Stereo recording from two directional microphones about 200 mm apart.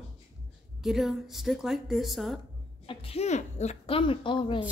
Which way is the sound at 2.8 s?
30° left (ahead or behind).